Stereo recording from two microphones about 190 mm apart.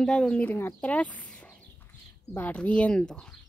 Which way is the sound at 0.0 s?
5° left (ahead or behind).